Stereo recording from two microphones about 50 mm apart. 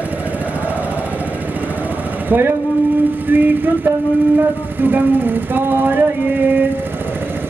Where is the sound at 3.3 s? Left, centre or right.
Right.